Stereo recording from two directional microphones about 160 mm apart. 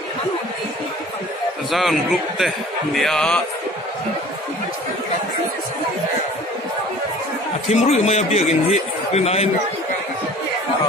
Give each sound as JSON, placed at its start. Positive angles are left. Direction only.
{"t": 1.7, "sound": "a man's voice", "side_deg": 0}
{"t": 7.6, "sound": "a man's voice", "side_deg": 40}